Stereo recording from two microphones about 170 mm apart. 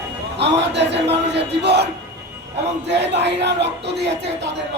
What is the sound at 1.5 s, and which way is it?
Speech, 80° right.